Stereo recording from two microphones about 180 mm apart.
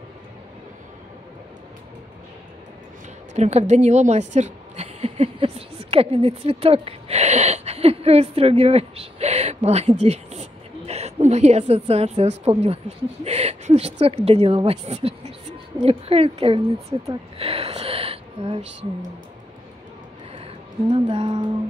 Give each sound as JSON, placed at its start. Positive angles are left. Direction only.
{"t": 3.3, "sound": "a woman's voice", "side_deg": -40}
{"t": 16.9, "sound": "music", "side_deg": -25}
{"t": 17.4, "sound": "a sound", "side_deg": -35}
{"t": 20.9, "sound": "music", "side_deg": -30}